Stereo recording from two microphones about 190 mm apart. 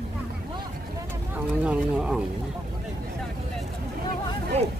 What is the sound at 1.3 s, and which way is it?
Speech, 5° right (ahead or behind).